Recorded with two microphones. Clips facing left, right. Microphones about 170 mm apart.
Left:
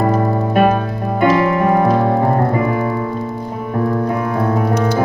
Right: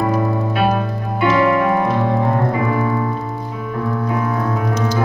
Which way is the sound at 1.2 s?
40° left (ahead or behind).